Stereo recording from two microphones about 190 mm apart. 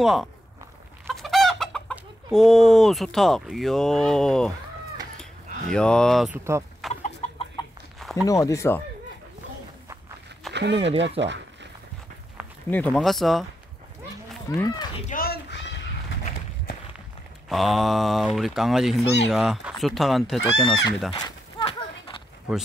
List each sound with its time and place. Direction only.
0.0 s speech: centre (ahead or behind)
1.0 s chicken: centre (ahead or behind)
5.7 s speech: 5° left (ahead or behind)
6.8 s chicken: centre (ahead or behind)
7.2 s chicken: 30° left (ahead or behind)
8.3 s speech: 15° left (ahead or behind)
10.5 s speech: 65° right (ahead or behind)
12.6 s speech: 10° left (ahead or behind)
14.5 s speech: 15° left (ahead or behind)
15.0 s a sound: 50° left (ahead or behind)
17.5 s speech: centre (ahead or behind)
21.1 s a sound: 25° left (ahead or behind)